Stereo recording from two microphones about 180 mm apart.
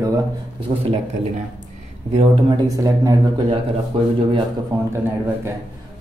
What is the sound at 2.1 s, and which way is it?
Speech, 35° right (ahead or behind).